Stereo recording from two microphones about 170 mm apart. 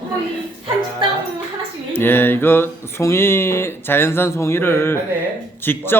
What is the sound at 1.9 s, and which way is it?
Mantra, 10° left (ahead or behind).